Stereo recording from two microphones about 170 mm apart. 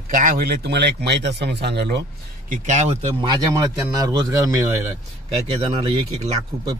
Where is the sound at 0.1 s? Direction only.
55° right (ahead or behind); by 2.0 s 80° right.